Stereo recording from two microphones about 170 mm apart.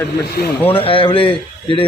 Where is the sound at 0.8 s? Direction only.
30° left (ahead or behind).